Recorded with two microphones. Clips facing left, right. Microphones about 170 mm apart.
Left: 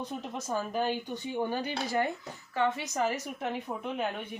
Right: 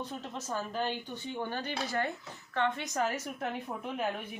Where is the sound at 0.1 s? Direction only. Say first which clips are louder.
Left 3 dB; 15° left (ahead or behind).